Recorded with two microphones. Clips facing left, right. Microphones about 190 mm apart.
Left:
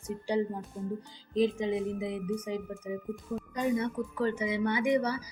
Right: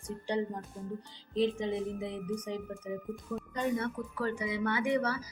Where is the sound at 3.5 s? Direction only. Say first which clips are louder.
Left 3 dB; 15° left (ahead or behind).